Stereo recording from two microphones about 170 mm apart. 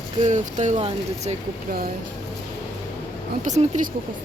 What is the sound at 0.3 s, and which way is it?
Speech, 45° right (ahead or behind).